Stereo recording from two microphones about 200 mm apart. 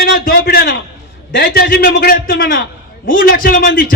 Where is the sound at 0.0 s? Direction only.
50° left (ahead or behind).